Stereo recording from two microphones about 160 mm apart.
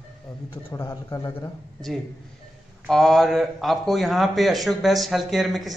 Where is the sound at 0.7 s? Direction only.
20° left (ahead or behind).